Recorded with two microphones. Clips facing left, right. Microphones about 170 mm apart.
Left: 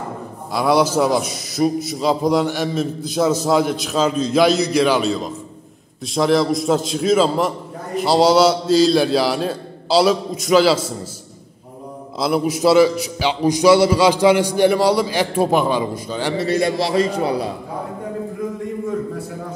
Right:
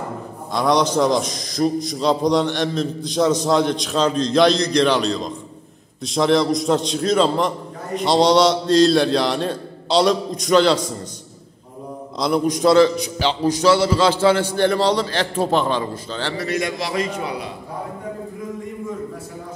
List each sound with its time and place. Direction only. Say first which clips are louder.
0.5 s a man's voice: left 2 dB; 5° left (ahead or behind)
12.2 s a man's voice: even; 5° left (ahead or behind)
16.3 s a man's voice: left 6 dB; 30° left (ahead or behind)